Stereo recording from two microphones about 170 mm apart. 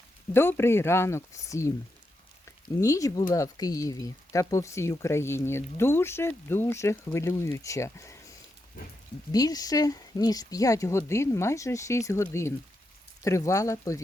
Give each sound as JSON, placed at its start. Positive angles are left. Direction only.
{"t": 0.3, "sound": "speech", "side_deg": 15}
{"t": 9.3, "sound": "speech", "side_deg": 20}